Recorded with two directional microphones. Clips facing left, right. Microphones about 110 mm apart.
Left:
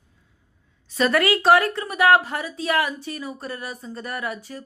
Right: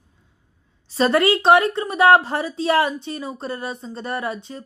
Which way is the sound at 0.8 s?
30° right (ahead or behind).